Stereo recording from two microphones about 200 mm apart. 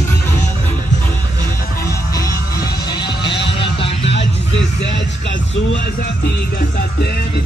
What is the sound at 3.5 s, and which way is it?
Music, 25° left (ahead or behind).